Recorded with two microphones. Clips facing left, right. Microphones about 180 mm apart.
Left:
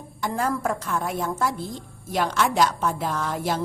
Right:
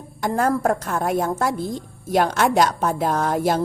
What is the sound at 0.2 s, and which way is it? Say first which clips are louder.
A woman's voice: right 5 dB; 50° right (ahead or behind).